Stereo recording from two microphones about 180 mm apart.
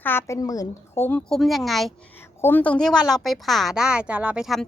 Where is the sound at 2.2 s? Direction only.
10° left (ahead or behind).